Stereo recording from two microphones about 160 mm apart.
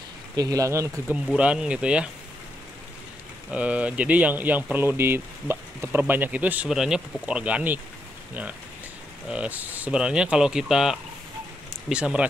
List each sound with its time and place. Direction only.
0.4 s speech: 20° right (ahead or behind)
1.1 s speech: 5° right (ahead or behind)
3.5 s speech: 10° right (ahead or behind)
9.3 s speech: 10° right (ahead or behind)